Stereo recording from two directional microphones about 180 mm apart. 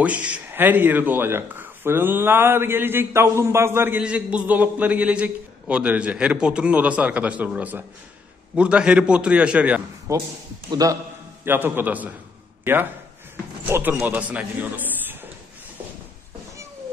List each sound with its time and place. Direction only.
0.0 s a man's voice: 5° right (ahead or behind)
10.1 s a man's voice: 15° right (ahead or behind)
13.7 s a man's voice: 15° right (ahead or behind)